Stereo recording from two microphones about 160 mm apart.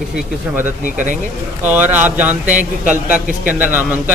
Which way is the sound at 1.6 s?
10° right (ahead or behind).